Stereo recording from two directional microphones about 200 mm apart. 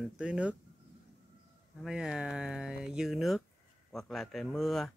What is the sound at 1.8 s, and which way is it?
Speech, 5° right (ahead or behind).